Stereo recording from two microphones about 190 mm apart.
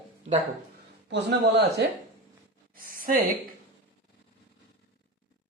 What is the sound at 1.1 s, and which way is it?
Speech, 65° right (ahead or behind).